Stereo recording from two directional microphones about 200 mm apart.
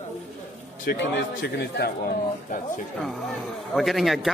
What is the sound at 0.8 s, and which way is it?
Speech, 55° left (ahead or behind).